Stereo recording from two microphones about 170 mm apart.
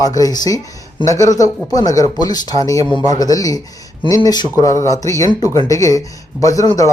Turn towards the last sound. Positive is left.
turn(degrees=20)  # may be behind; listen again after turning